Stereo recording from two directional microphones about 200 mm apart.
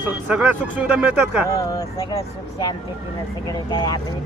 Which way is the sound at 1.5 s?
15° left (ahead or behind).